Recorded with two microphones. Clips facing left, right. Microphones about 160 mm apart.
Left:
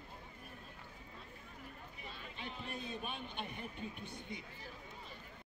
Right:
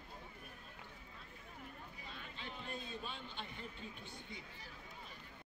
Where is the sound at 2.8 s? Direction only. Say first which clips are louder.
Left 3 dB; 15° left (ahead or behind).